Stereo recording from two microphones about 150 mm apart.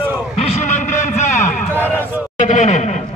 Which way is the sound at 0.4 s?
45° left (ahead or behind).